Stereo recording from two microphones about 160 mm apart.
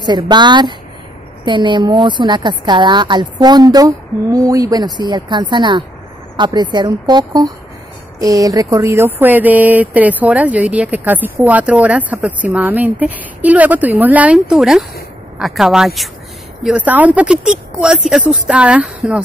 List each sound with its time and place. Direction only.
0.0 s a woman's voice: 25° right (ahead or behind); by 19.2 s 5° right (ahead or behind)